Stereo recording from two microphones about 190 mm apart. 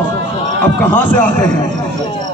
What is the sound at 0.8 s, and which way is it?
Speech, 10° left (ahead or behind).